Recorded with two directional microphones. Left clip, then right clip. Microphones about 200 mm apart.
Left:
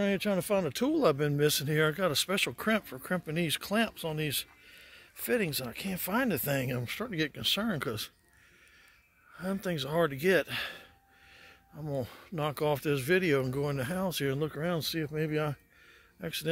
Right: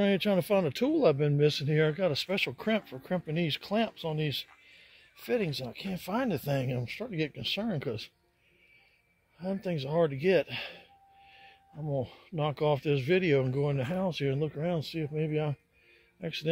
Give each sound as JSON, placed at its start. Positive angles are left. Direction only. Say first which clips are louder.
{"t": 0.0, "sound": "speech", "louder": "right 3 dB", "side_deg": 0}
{"t": 9.4, "sound": "speech", "louder": "even", "side_deg": 25}
{"t": 11.9, "sound": "speech", "louder": "right 2 dB", "side_deg": 20}
{"t": 16.2, "sound": "speech", "louder": "even", "side_deg": 10}